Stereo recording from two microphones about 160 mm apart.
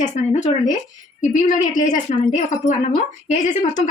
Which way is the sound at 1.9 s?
50° left (ahead or behind).